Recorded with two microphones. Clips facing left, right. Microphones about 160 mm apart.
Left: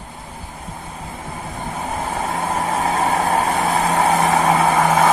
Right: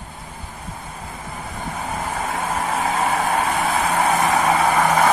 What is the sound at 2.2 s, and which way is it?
Vehicle, 30° left (ahead or behind).